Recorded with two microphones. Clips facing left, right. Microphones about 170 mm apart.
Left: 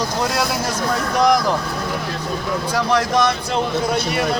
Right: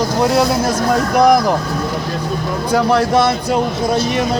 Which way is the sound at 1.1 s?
10° right (ahead or behind).